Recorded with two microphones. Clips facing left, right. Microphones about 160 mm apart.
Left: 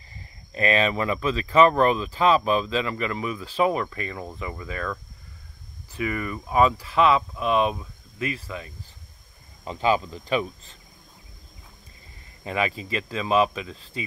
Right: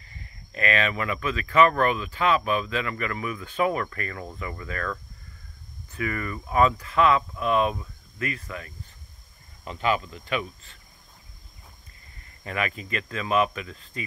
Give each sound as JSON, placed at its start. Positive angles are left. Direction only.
{"t": 0.5, "sound": "speech", "side_deg": 30}
{"t": 5.9, "sound": "speech", "side_deg": 15}
{"t": 12.4, "sound": "speech", "side_deg": 25}